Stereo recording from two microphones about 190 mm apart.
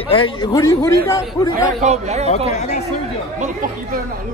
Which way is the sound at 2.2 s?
35° left (ahead or behind).